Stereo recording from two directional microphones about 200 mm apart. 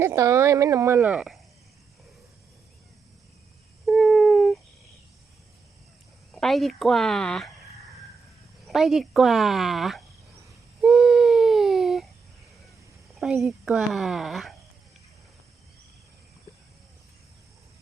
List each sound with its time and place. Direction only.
0.0 s speech: 15° right (ahead or behind)
3.8 s a sound: centre (ahead or behind)
6.3 s speech: centre (ahead or behind)
8.6 s speech: centre (ahead or behind)
10.8 s a sound: centre (ahead or behind)
13.1 s speech: centre (ahead or behind)